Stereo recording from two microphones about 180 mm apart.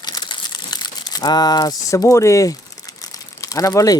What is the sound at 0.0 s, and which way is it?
Crumpling, 25° left (ahead or behind).